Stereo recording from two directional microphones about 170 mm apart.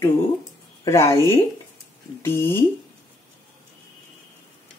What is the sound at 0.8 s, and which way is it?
A woman's voice, 15° left (ahead or behind).